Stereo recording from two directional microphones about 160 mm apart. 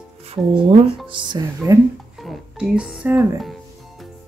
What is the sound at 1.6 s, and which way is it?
Speech, 20° right (ahead or behind).